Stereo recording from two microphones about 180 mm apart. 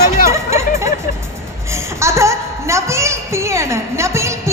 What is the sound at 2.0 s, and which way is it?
Speech, 15° right (ahead or behind).